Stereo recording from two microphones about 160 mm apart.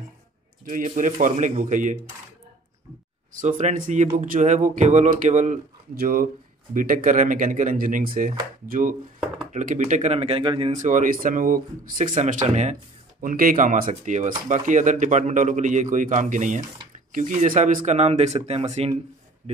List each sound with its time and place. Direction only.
0.7 s speech: 55° right (ahead or behind)
3.3 s speech: 50° right (ahead or behind)
5.9 s speech: 65° right (ahead or behind); by 10.7 s 35° right (ahead or behind)
10.7 s speech: 50° right (ahead or behind)
13.2 s speech: 60° right (ahead or behind); by 18.9 s 40° right (ahead or behind)